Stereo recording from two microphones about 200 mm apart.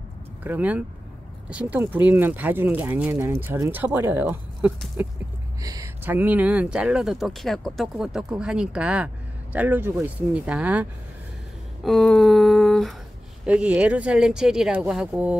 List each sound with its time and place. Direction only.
0.4 s speech: 10° right (ahead or behind)
11.8 s a sound: centre (ahead or behind)
13.5 s speech: 5° right (ahead or behind)